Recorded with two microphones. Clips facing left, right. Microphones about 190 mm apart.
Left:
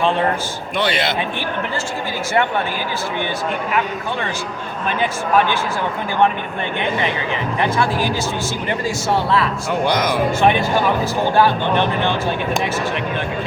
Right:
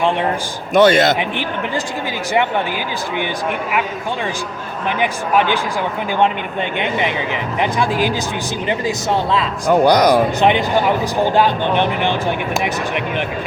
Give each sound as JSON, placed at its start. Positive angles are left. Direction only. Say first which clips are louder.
{"t": 0.7, "sound": "a man's voice", "louder": "right 9 dB", "side_deg": -45}
{"t": 3.7, "sound": "speech", "louder": "even", "side_deg": -10}
{"t": 6.7, "sound": "speech", "louder": "even", "side_deg": -15}
{"t": 9.6, "sound": "speech", "louder": "right 11 dB", "side_deg": -40}
{"t": 10.4, "sound": "speech", "louder": "right 1 dB", "side_deg": -20}